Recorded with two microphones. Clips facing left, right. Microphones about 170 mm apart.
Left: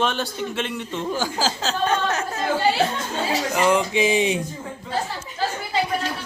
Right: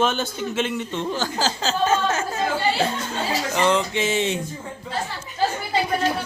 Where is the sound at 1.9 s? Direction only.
5° right (ahead or behind).